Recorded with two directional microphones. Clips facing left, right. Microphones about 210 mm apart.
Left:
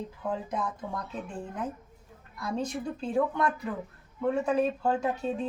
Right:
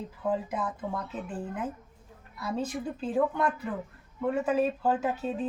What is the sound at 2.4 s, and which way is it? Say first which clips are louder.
A woman's voice: even; 5° right (ahead or behind).